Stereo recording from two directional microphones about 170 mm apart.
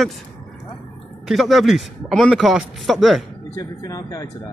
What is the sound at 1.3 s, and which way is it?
Speech, centre (ahead or behind).